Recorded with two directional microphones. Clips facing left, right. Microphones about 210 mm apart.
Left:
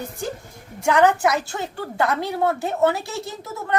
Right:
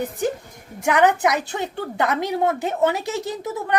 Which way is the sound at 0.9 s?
20° right (ahead or behind).